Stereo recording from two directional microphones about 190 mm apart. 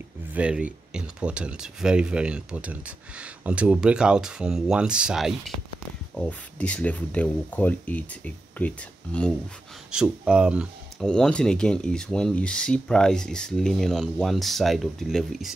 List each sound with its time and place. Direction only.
0.3 s speech: 5° right (ahead or behind)
9.8 s speech: 5° right (ahead or behind)